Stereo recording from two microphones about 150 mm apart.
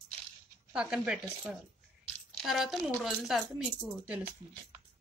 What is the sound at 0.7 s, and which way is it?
A woman's voice, 5° right (ahead or behind).